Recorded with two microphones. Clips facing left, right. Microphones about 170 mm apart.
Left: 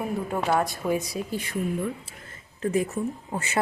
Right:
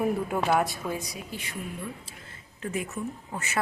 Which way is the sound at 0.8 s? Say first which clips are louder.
Left 7 dB; 20° left (ahead or behind).